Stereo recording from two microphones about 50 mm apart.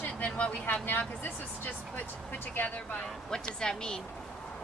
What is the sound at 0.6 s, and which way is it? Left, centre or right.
Speech, left.